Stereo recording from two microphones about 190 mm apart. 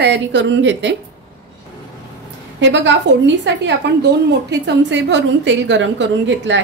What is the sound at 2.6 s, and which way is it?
A woman's voice, 70° right (ahead or behind).